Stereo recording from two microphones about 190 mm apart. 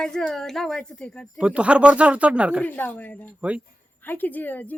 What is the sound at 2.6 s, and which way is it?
Speech, 10° left (ahead or behind).